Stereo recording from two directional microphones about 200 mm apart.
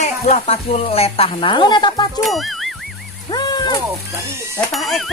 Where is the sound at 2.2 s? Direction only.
Centre (ahead or behind).